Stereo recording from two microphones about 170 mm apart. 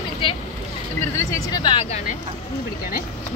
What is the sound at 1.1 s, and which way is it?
Speech, 20° left (ahead or behind).